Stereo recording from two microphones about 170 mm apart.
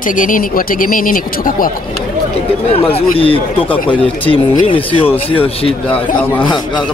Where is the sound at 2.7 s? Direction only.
35° left (ahead or behind).